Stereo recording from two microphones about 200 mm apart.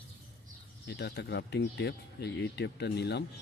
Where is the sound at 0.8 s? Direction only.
55° left (ahead or behind).